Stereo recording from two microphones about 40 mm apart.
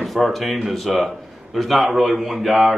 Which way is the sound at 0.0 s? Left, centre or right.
Centre.